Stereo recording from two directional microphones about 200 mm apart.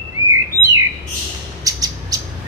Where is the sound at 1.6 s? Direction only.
15° right (ahead or behind).